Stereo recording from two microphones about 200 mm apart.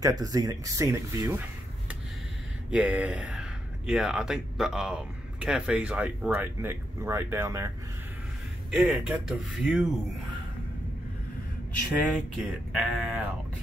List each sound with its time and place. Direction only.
0.0 s speech: 20° right (ahead or behind)
2.7 s speech: 5° right (ahead or behind)
8.6 s speech: centre (ahead or behind)
12.4 s speech: centre (ahead or behind)